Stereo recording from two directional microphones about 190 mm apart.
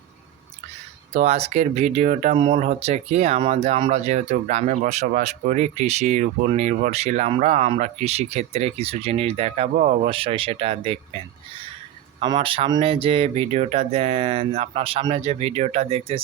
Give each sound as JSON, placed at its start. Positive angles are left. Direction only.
{"t": 1.1, "sound": "speech", "side_deg": -35}
{"t": 12.2, "sound": "speech", "side_deg": -25}